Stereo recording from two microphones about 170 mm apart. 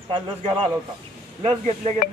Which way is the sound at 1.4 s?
35° right (ahead or behind).